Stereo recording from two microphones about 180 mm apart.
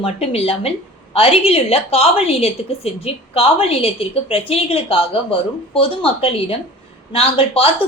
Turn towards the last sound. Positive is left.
turn(degrees=30)  # may be behind; listen again after turning